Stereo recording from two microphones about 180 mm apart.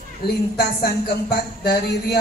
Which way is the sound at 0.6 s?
60° left (ahead or behind).